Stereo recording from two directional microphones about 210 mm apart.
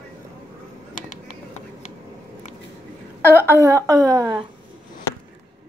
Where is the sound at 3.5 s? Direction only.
15° right (ahead or behind).